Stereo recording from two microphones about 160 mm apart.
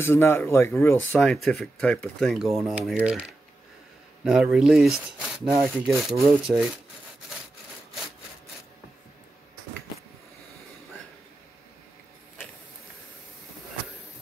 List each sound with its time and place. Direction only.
0.0 s speech: 15° left (ahead or behind)
1.2 s speech: centre (ahead or behind)
5.9 s speech: centre (ahead or behind)